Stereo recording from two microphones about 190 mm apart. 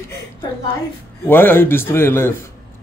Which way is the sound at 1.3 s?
10° left (ahead or behind).